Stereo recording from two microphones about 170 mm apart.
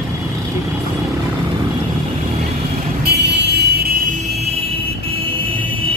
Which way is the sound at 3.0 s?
80° right.